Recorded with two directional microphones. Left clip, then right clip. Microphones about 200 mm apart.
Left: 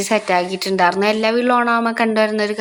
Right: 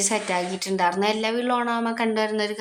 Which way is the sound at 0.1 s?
25° left (ahead or behind).